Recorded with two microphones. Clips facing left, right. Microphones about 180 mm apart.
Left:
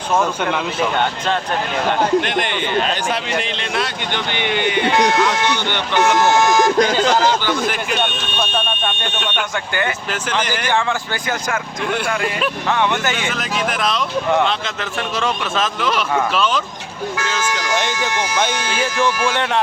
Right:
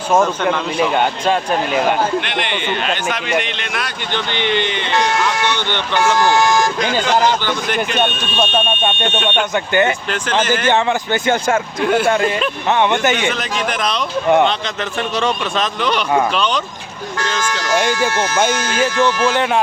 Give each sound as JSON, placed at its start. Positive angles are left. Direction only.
{"t": 0.8, "sound": "speech", "side_deg": -10}
{"t": 2.2, "sound": "a man's voice", "side_deg": 45}
{"t": 4.1, "sound": "speech", "side_deg": 10}
{"t": 7.4, "sound": "speech", "side_deg": 5}
{"t": 9.0, "sound": "speech", "side_deg": -25}
{"t": 10.4, "sound": "speech", "side_deg": 15}
{"t": 10.7, "sound": "speech", "side_deg": -20}
{"t": 13.3, "sound": "speech", "side_deg": 0}
{"t": 15.2, "sound": "speech", "side_deg": 0}
{"t": 17.2, "sound": "speech", "side_deg": 10}
{"t": 19.3, "sound": "speech", "side_deg": -5}